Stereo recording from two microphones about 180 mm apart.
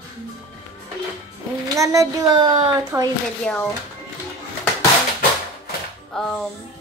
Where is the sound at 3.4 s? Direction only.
5° left (ahead or behind).